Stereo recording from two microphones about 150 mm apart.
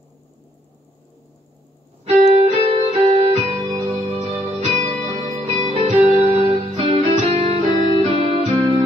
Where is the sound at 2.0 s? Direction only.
45° right (ahead or behind).